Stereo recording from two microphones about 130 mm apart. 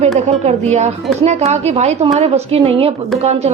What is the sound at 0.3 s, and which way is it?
Speech, 60° right (ahead or behind).